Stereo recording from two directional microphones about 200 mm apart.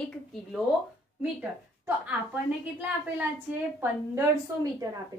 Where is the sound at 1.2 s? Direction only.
5° right (ahead or behind).